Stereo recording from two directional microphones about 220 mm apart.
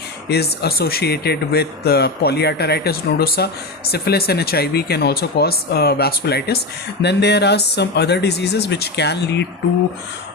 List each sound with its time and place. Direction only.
0.3 s speech: 45° left (ahead or behind)